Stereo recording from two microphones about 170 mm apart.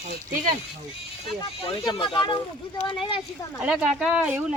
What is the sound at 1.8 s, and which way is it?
Speech, 25° left (ahead or behind).